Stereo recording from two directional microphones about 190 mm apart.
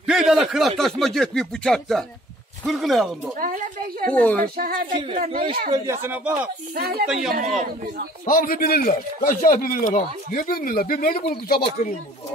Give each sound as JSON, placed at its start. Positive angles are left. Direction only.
{"t": 0.0, "sound": "speech", "side_deg": -5}
{"t": 3.3, "sound": "speech", "side_deg": -45}
{"t": 4.1, "sound": "speech", "side_deg": 10}
{"t": 4.6, "sound": "speech", "side_deg": -50}
{"t": 4.9, "sound": "speech", "side_deg": -25}
{"t": 5.2, "sound": "speech", "side_deg": -45}
{"t": 5.7, "sound": "speech", "side_deg": -15}
{"t": 6.7, "sound": "speech", "side_deg": -55}
{"t": 7.1, "sound": "speech", "side_deg": -5}
{"t": 7.3, "sound": "speech", "side_deg": -50}
{"t": 8.3, "sound": "speech", "side_deg": 50}